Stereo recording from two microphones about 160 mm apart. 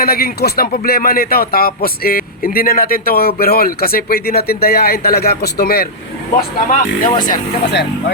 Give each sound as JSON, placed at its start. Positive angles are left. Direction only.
{"t": 0.0, "sound": "speech", "side_deg": 75}
{"t": 6.3, "sound": "speech", "side_deg": 55}
{"t": 7.3, "sound": "speech", "side_deg": 90}